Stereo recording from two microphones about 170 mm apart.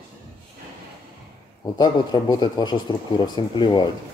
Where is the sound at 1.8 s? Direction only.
25° left (ahead or behind).